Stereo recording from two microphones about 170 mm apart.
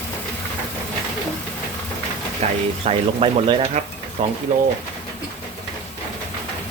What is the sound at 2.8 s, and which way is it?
Speech, 35° right (ahead or behind).